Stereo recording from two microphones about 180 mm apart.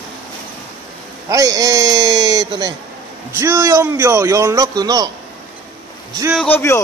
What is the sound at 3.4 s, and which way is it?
Speech, 15° right (ahead or behind).